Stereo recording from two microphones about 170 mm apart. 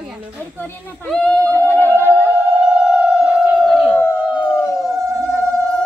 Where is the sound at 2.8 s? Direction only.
5° right (ahead or behind).